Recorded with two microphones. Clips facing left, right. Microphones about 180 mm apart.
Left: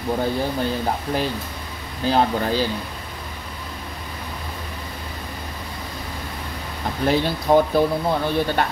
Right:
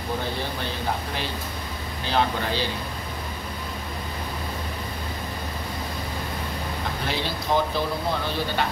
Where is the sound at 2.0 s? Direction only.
40° left (ahead or behind).